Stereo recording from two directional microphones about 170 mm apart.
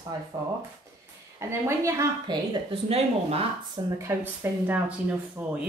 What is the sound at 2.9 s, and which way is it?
Speech, 35° right (ahead or behind).